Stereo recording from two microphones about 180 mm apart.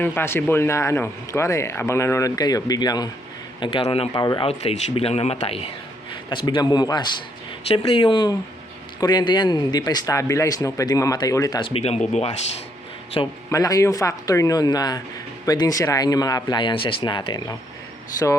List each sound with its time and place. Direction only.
0.0 s speech: 10° left (ahead or behind); by 4.1 s 35° left (ahead or behind)
4.1 s speech: 20° left (ahead or behind)
4.4 s speech: 35° left (ahead or behind)
13.2 s speech: 25° left (ahead or behind)